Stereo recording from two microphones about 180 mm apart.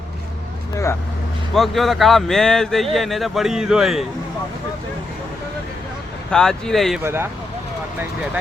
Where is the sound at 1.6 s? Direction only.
Centre (ahead or behind).